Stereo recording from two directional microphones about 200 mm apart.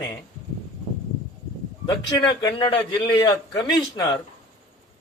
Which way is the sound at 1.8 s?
20° left (ahead or behind).